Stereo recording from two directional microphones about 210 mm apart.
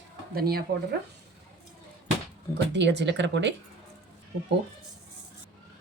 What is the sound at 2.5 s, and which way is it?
Speech, 55° right (ahead or behind).